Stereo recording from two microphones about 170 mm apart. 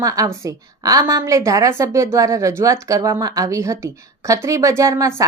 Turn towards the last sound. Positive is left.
turn(degrees=-15)  # may be behind; listen again after turning